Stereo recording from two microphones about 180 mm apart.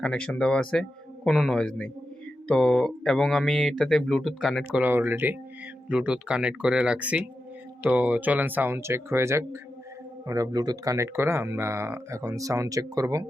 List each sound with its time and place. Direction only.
0.0 s speech: 5° left (ahead or behind); by 13.2 s 20° right (ahead or behind)